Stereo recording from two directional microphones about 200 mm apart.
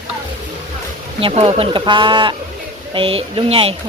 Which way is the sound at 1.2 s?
25° right (ahead or behind).